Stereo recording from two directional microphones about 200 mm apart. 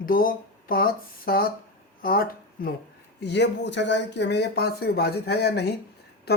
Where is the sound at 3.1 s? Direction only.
60° left (ahead or behind).